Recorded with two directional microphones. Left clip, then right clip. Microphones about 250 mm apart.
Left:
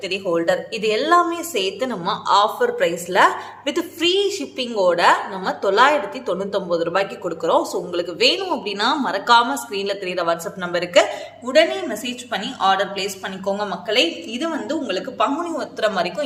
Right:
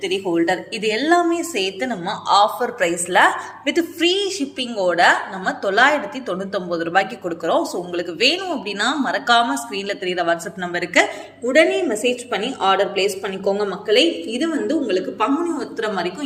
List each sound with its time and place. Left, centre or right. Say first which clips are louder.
0.0 s a woman's voice: right 1 dB; centre
11.4 s a woman's voice: right 2 dB; centre